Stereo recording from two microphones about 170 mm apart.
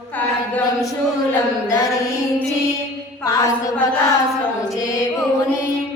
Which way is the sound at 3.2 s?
20° left (ahead or behind).